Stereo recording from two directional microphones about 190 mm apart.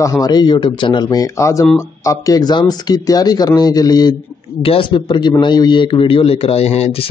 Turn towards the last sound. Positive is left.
turn(degrees=30)  # may be behind; listen again after turning